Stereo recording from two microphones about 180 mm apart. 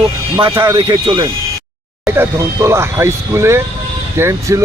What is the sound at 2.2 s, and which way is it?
Speech, 15° right (ahead or behind).